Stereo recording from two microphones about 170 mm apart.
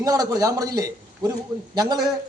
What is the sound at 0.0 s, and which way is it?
A man's voice, 20° right (ahead or behind).